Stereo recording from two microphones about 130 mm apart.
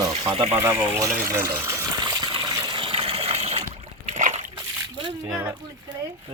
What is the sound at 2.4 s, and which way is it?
Water, 30° right (ahead or behind).